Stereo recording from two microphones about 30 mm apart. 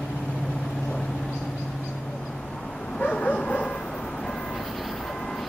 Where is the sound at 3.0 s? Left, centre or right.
Left.